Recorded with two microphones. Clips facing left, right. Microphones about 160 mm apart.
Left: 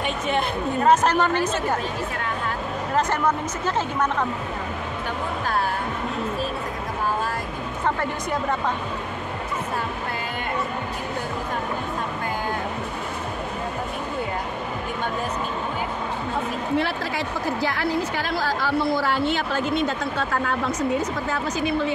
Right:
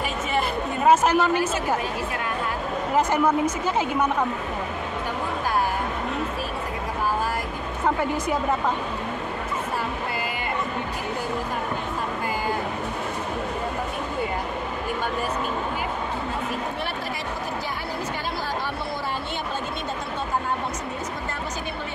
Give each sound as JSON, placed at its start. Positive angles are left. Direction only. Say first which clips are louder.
{"t": 0.8, "sound": "a woman's voice", "louder": "right 1 dB", "side_deg": -5}
{"t": 3.0, "sound": "a woman's voice", "louder": "right 2 dB", "side_deg": -10}
{"t": 8.0, "sound": "speech", "louder": "right 2 dB", "side_deg": -5}
{"t": 16.7, "sound": "a woman's voice", "louder": "left 6 dB", "side_deg": 90}